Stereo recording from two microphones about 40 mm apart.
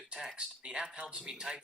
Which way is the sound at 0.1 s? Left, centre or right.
Centre.